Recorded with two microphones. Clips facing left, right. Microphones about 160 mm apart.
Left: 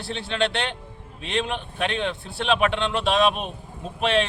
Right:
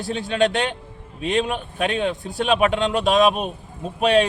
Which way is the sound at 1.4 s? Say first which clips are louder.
Right 3 dB; 10° right (ahead or behind).